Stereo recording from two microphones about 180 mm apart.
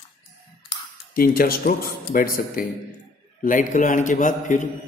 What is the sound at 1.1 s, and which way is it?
A man's voice, 55° left (ahead or behind).